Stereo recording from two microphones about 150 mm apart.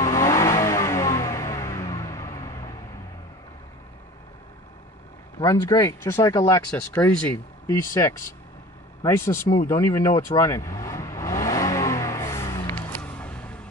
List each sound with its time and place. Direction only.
0.0 s music: 20° left (ahead or behind)
5.4 s speech: 25° left (ahead or behind)
7.0 s speech: 10° left (ahead or behind)
7.6 s speech: 20° left (ahead or behind)
9.7 s vehicle: 20° left (ahead or behind)